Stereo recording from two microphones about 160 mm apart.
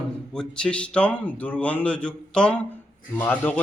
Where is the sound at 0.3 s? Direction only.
5° left (ahead or behind).